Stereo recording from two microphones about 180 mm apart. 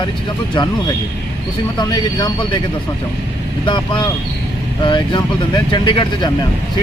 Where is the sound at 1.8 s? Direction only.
20° left (ahead or behind).